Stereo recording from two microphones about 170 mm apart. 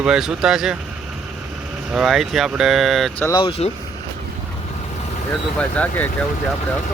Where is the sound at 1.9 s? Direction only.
Centre (ahead or behind).